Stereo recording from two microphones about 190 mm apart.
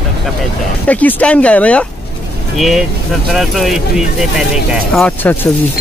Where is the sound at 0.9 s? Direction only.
10° left (ahead or behind).